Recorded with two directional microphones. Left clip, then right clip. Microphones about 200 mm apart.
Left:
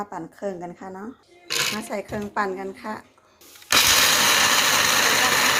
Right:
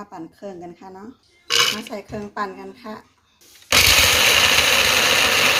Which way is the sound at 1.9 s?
20° left (ahead or behind).